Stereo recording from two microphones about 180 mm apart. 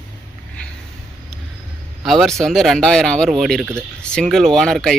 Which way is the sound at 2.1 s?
Centre (ahead or behind).